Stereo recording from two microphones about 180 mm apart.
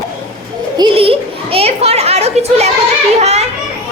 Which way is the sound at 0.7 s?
30° right (ahead or behind).